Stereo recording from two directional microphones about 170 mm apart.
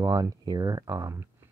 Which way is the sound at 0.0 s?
20° right (ahead or behind).